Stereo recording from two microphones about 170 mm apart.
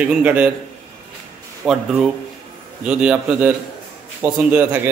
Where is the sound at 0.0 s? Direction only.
10° right (ahead or behind).